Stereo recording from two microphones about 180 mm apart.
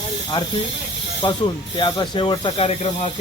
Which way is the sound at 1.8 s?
25° left (ahead or behind).